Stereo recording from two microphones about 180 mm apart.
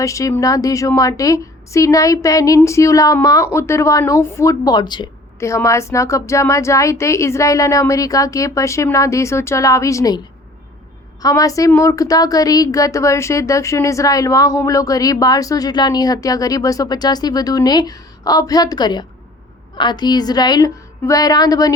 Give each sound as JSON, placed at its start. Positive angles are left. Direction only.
{"t": 0.0, "sound": "a woman's voice", "side_deg": 20}
{"t": 11.2, "sound": "a woman's voice", "side_deg": 20}